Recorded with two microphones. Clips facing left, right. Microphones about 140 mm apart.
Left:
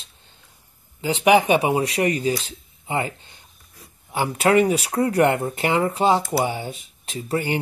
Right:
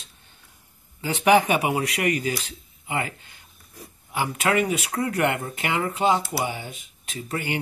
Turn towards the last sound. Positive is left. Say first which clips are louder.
# left 5 dB
turn(degrees=30)  # may be behind; listen again after turning